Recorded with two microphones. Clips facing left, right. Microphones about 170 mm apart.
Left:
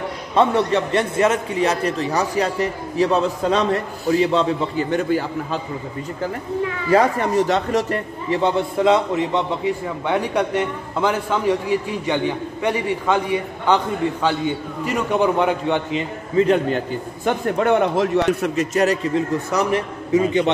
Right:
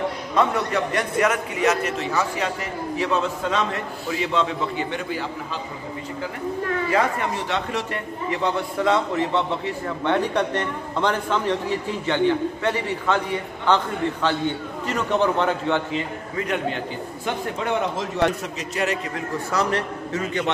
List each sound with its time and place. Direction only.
0.4 s a man's voice: 30° left (ahead or behind); by 5.6 s 45° left (ahead or behind)
6.9 s a man's voice: 40° left (ahead or behind)
8.4 s a man's voice: 20° left (ahead or behind)
14.9 s a man's voice: 10° left (ahead or behind)
16.4 s a man's voice: 35° left (ahead or behind)
17.2 s a man's voice: 55° left (ahead or behind)
19.1 s a man's voice: 15° left (ahead or behind)